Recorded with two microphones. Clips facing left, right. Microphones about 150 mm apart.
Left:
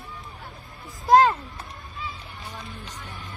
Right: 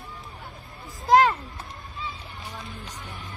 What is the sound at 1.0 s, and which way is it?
Speech, 20° left (ahead or behind).